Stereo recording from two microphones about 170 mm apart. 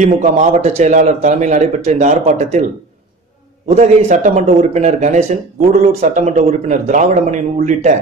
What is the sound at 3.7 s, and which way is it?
A man's voice, 40° right (ahead or behind).